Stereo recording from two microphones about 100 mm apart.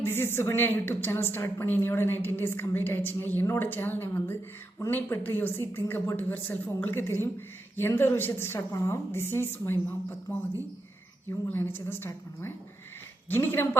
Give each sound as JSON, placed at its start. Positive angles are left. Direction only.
{"t": 0.0, "sound": "a woman's voice", "side_deg": 25}
{"t": 11.4, "sound": "a woman's voice", "side_deg": 20}